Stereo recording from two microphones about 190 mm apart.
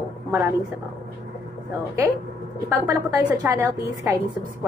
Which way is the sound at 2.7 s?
15° right (ahead or behind).